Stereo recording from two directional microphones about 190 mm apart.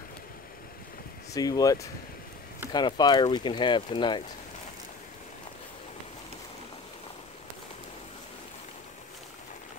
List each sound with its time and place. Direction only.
1.3 s speech: 20° left (ahead or behind)